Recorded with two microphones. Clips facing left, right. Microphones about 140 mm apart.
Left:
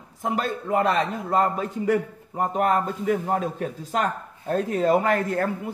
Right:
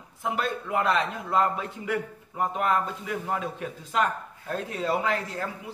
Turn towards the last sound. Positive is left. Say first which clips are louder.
# left 7 dB
turn(degrees=55)  # may be behind; listen again after turning